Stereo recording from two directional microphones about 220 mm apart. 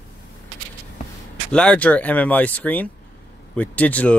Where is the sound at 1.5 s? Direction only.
5° left (ahead or behind).